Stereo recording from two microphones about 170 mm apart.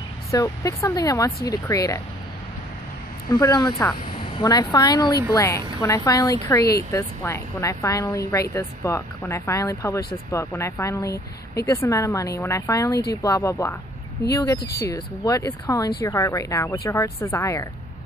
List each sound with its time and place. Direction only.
0.3 s speech: 20° left (ahead or behind)
3.3 s speech: 20° left (ahead or behind)